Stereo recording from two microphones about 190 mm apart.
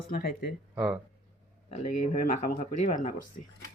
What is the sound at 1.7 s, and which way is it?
Speech, 40° left (ahead or behind).